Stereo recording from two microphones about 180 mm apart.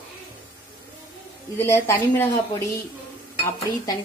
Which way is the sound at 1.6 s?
15° left (ahead or behind).